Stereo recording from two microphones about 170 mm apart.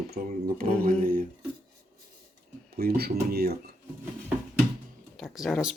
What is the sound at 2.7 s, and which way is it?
Speech, 65° right (ahead or behind).